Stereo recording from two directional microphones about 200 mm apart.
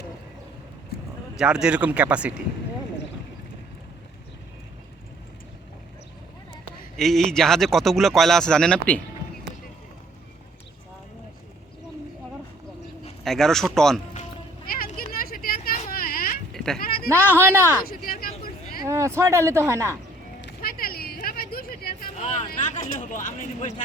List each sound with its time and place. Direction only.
1.4 s speech: 5° right (ahead or behind)
6.9 s speech: centre (ahead or behind)
13.2 s speech: centre (ahead or behind)
14.7 s a sound: 45° left (ahead or behind)
16.5 s goat: 5° left (ahead or behind)
16.8 s a sound: 50° left (ahead or behind)
17.1 s speech: 10° right (ahead or behind)
17.8 s vehicle: 45° left (ahead or behind)
18.8 s speech: 15° right (ahead or behind)
20.4 s a sound: 50° left (ahead or behind)
22.2 s speech: 30° left (ahead or behind)